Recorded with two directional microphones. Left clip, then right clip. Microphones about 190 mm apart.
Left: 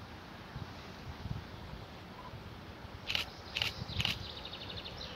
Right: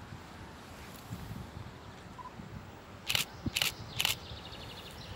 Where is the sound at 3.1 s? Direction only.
60° right (ahead or behind).